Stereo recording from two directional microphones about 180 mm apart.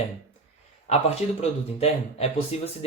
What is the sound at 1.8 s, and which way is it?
Speech, 35° left (ahead or behind).